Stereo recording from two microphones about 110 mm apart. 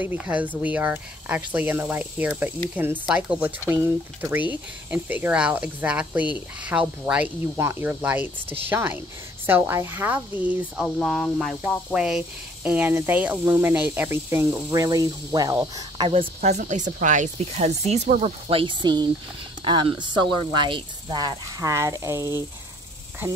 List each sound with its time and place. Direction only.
0.0 s speech: 15° right (ahead or behind)
11.0 s speech: centre (ahead or behind)
11.9 s speech: 10° right (ahead or behind); by 15.5 s 35° right (ahead or behind)
15.6 s cricket: 40° right (ahead or behind)
16.1 s speech: 70° right (ahead or behind); by 22.4 s 25° right (ahead or behind)